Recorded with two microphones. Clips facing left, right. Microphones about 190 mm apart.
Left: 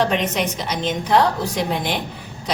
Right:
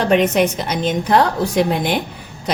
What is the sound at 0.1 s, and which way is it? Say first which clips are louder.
A woman's voice: right 7 dB; 50° right (ahead or behind).